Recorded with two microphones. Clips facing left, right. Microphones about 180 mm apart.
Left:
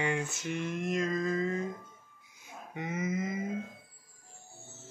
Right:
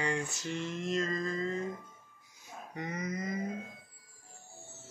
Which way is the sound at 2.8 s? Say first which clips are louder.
Left 4 dB; 5° left (ahead or behind).